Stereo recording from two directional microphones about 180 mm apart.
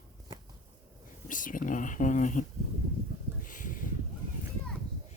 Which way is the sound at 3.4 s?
45° left (ahead or behind).